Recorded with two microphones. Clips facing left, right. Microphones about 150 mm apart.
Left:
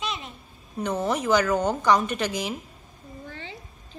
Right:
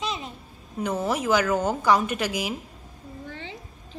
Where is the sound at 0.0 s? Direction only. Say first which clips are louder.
Right 2 dB; 30° right (ahead or behind).